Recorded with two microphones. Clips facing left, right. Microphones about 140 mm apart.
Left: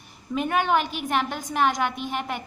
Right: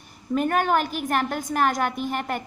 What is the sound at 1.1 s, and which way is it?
Speech, centre (ahead or behind).